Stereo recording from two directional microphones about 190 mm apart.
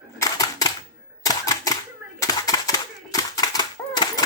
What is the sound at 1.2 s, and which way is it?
Single-lens reflex camera, 20° left (ahead or behind).